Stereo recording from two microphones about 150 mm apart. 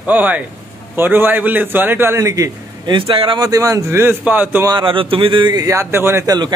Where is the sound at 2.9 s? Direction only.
35° right (ahead or behind); by 4.6 s 10° right (ahead or behind).